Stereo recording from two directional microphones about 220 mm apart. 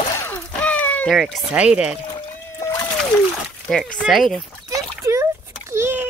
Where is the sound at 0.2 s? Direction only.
5° left (ahead or behind).